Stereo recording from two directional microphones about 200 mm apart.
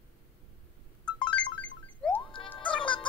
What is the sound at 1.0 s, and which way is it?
Music, 5° left (ahead or behind).